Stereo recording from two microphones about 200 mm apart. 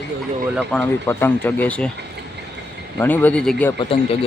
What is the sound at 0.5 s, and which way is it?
Speech, 5° left (ahead or behind).